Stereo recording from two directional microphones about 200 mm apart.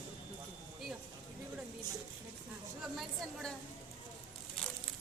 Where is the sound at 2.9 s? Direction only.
Centre (ahead or behind).